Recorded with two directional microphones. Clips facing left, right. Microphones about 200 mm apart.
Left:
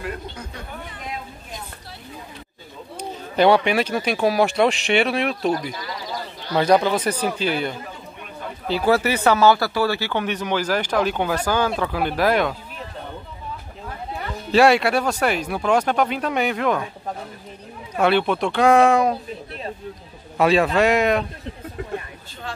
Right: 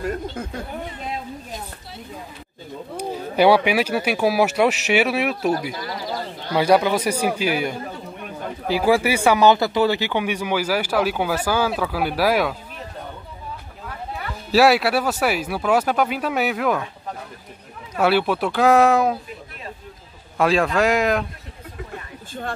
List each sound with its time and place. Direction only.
0.0 s speech: 45° right (ahead or behind)
3.0 s speech: 10° right (ahead or behind)
14.5 s speech: 5° right (ahead or behind)
18.0 s speech: 5° right (ahead or behind)
20.3 s speech: centre (ahead or behind)